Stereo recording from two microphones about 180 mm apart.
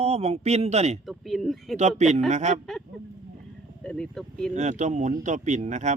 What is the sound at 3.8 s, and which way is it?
Speech, 5° left (ahead or behind).